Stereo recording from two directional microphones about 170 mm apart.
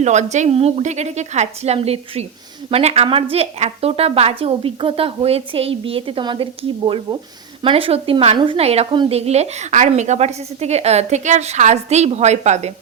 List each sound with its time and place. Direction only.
0.0 s a woman's voice: 45° right (ahead or behind)